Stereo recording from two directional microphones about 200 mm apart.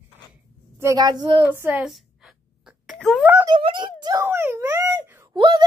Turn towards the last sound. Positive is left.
turn(degrees=-25)  # may be behind; listen again after turning